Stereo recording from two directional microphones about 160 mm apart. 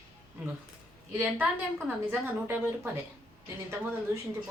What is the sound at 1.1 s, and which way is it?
Speech, 10° right (ahead or behind).